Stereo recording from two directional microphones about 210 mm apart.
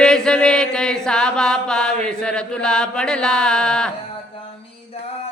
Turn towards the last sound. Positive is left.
turn(degrees=5)  # may be behind; listen again after turning